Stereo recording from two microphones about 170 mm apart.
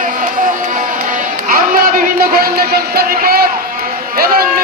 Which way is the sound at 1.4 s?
55° right (ahead or behind).